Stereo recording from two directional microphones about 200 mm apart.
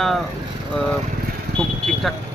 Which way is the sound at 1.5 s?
Centre (ahead or behind).